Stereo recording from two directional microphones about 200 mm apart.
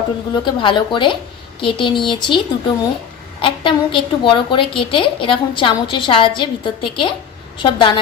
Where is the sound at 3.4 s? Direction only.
25° left (ahead or behind).